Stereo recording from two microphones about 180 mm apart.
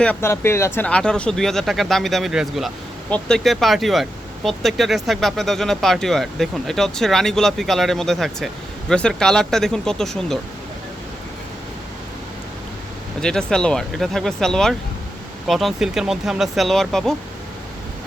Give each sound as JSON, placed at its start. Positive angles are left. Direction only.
{"t": 0.0, "sound": "speech", "side_deg": 10}
{"t": 13.2, "sound": "speech", "side_deg": 5}